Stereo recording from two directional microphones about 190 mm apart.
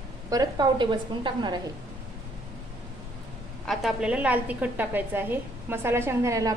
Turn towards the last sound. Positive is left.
turn(degrees=-15)  # may be behind; listen again after turning